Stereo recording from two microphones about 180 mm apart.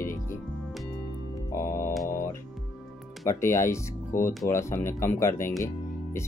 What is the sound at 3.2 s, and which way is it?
Speech, 15° left (ahead or behind).